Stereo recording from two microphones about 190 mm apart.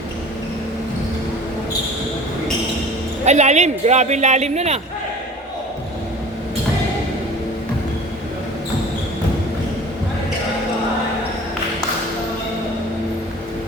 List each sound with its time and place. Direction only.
3.2 s speech: 35° right (ahead or behind)